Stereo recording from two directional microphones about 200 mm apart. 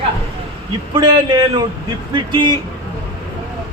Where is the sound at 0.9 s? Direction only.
20° right (ahead or behind).